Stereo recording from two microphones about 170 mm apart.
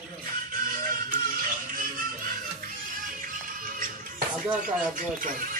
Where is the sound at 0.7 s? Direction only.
55° right (ahead or behind).